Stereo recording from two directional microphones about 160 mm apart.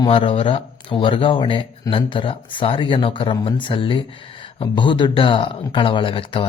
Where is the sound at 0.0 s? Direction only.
35° left (ahead or behind).